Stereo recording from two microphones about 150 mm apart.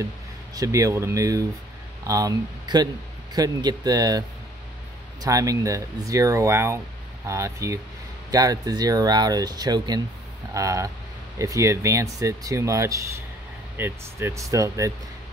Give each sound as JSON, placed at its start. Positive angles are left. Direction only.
{"t": 0.6, "sound": "speech", "side_deg": -20}
{"t": 5.2, "sound": "speech", "side_deg": -20}